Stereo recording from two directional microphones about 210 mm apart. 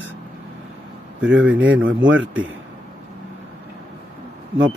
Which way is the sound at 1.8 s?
65° right (ahead or behind).